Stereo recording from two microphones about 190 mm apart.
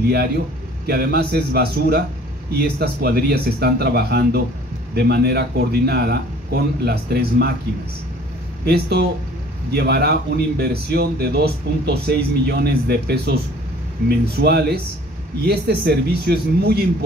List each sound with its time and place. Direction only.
0.8 s a man's voice: 55° right (ahead or behind)
8.6 s a man's voice: 60° right (ahead or behind)